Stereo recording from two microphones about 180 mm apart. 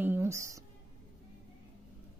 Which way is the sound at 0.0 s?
15° right (ahead or behind).